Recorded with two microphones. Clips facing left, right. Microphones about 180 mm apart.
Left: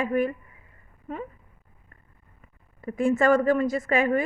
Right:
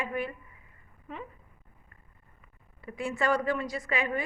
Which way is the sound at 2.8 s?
45° left (ahead or behind).